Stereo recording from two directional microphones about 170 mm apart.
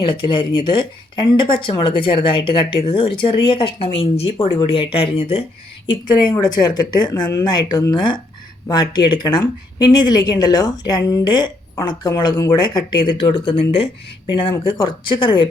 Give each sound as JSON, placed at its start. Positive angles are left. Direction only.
{"t": 0.0, "sound": "speech", "side_deg": 30}